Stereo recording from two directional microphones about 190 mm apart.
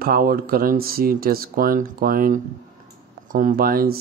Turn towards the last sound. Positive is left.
turn(degrees=-50)  # may be behind; listen again after turning